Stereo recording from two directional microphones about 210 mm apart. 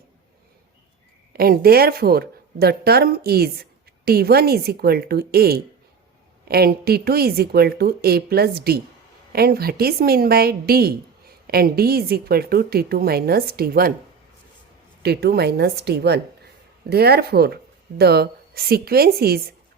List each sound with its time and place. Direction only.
1.3 s a woman's voice: 45° right (ahead or behind)
15.0 s a woman's voice: 50° right (ahead or behind)